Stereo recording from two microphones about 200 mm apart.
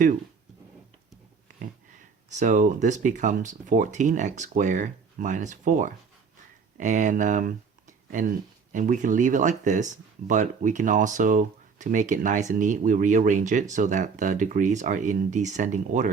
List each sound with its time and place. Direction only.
2.3 s speech: 40° right (ahead or behind)